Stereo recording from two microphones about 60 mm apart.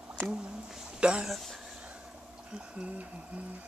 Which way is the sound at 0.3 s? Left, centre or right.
Centre.